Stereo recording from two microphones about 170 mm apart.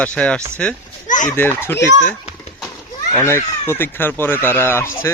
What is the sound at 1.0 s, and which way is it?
Fowl, 50° left (ahead or behind).